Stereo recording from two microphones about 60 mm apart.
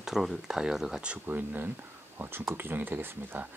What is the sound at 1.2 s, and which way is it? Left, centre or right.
Speech, right.